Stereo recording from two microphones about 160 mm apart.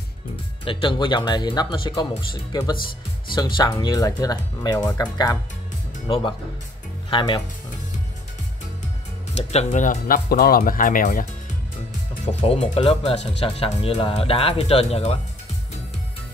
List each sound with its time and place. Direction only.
0.7 s speech: 30° left (ahead or behind)
9.3 s speech: 40° left (ahead or behind); by 11.2 s 60° left (ahead or behind)
12.4 s speech: 45° left (ahead or behind)